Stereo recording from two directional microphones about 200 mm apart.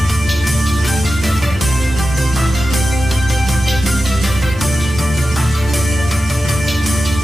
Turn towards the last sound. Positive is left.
turn(degrees=0)  # may be behind; listen again after turning